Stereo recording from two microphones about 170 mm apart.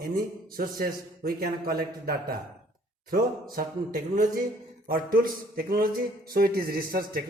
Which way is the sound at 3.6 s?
60° right (ahead or behind).